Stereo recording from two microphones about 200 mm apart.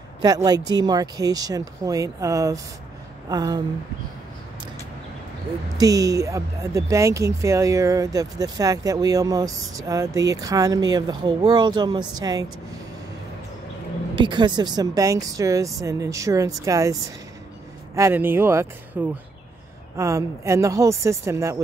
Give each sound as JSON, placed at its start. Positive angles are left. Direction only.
{"t": 0.2, "sound": "speech", "side_deg": -20}
{"t": 5.8, "sound": "speech", "side_deg": -15}
{"t": 14.1, "sound": "speech", "side_deg": -25}
{"t": 17.9, "sound": "speech", "side_deg": -10}